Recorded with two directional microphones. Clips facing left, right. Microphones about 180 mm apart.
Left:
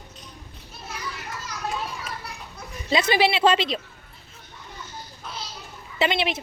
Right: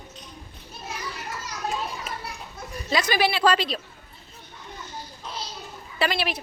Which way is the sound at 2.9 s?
25° left (ahead or behind).